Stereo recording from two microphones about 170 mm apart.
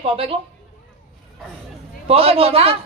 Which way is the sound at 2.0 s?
35° right (ahead or behind).